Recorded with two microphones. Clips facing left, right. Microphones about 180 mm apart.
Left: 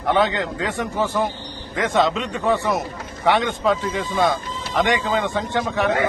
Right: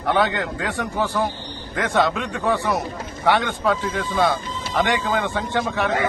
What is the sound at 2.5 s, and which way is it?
Speech, 20° left (ahead or behind).